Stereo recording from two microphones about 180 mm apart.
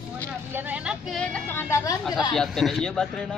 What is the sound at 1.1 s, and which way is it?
Speech, 5° left (ahead or behind).